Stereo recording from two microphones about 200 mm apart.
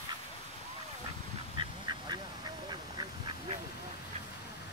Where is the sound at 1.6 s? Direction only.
25° right (ahead or behind).